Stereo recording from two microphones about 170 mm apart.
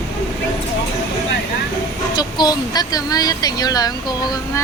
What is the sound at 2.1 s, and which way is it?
Speech, 25° left (ahead or behind).